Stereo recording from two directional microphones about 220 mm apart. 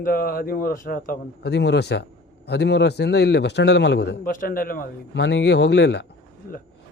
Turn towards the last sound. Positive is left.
turn(degrees=50)  # may be behind; listen again after turning